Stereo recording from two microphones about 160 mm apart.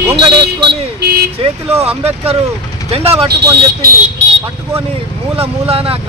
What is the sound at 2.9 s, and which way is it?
Speech, 35° right (ahead or behind).